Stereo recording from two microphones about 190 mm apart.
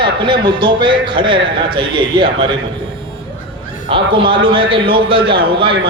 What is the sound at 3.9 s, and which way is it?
A man's voice, 25° right (ahead or behind).